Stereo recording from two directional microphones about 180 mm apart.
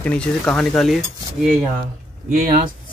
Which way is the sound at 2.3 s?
50° right (ahead or behind).